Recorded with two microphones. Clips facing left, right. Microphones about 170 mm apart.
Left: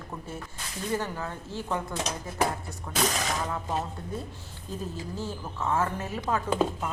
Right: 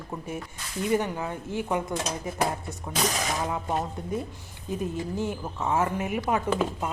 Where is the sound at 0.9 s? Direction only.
15° right (ahead or behind).